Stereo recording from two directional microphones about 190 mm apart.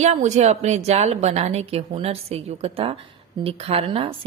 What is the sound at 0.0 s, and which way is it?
A woman's voice, 35° right (ahead or behind).